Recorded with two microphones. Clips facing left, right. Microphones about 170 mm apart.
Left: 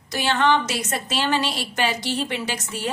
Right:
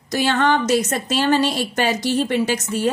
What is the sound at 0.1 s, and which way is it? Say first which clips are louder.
A woman's voice: right 2 dB; 45° right (ahead or behind).